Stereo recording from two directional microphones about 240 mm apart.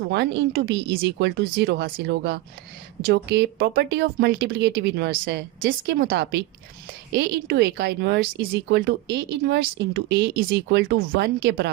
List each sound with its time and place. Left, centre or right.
0.1 s a woman's voice: right